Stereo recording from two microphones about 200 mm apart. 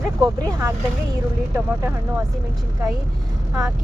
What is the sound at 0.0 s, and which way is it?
Speech, centre (ahead or behind).